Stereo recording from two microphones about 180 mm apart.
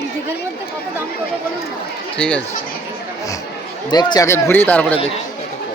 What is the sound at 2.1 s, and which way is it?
Speech, 5° left (ahead or behind).